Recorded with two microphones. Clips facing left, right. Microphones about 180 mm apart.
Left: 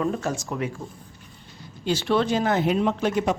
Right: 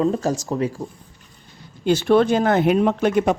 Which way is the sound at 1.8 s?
55° right (ahead or behind).